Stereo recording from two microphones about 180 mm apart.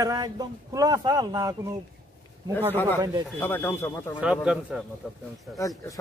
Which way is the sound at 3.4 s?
10° left (ahead or behind).